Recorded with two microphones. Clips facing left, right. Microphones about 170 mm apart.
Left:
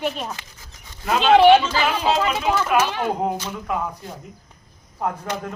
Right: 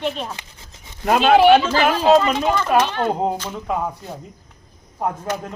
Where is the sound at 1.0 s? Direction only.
50° right (ahead or behind).